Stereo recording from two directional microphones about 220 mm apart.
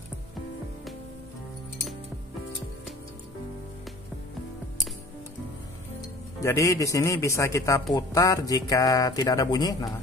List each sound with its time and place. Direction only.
5.9 s a man's voice: 15° left (ahead or behind)